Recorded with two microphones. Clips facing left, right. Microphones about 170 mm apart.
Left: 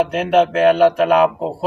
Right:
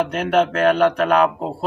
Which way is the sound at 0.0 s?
5° left (ahead or behind).